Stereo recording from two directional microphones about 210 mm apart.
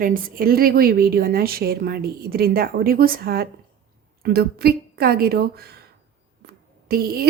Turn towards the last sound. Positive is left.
turn(degrees=-45)  # may be behind; listen again after turning